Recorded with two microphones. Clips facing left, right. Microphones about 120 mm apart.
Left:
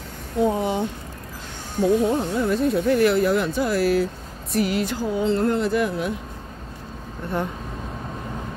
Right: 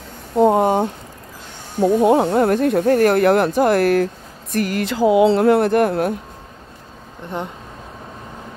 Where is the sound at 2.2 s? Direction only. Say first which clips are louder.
Right 6 dB; 70° right (ahead or behind); by 4.8 s 50° right (ahead or behind).